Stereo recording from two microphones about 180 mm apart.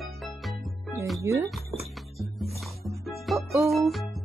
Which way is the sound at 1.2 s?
15° right (ahead or behind).